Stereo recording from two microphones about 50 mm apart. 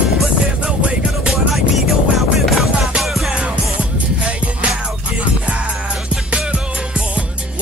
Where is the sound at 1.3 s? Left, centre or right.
Centre.